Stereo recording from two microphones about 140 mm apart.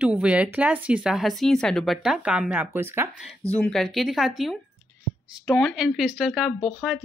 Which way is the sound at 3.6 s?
5° left (ahead or behind).